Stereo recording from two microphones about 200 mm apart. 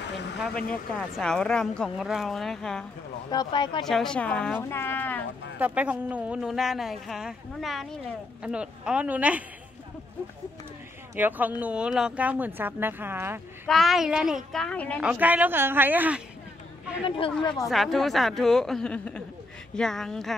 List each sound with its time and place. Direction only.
0.4 s speech: 5° left (ahead or behind)
3.3 s speech: 20° left (ahead or behind)
3.8 s speech: centre (ahead or behind)
5.6 s speech: 5° right (ahead or behind)
11.1 s speech: 10° right (ahead or behind)
13.7 s speech: centre (ahead or behind)
15.0 s speech: 5° right (ahead or behind)
17.6 s speech: centre (ahead or behind)